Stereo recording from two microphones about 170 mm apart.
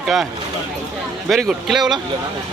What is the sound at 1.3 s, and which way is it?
Speech, centre (ahead or behind).